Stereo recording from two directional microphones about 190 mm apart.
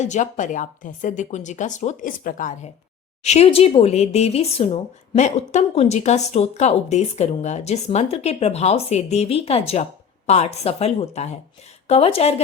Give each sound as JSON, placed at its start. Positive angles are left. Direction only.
{"t": 0.0, "sound": "speech", "side_deg": 40}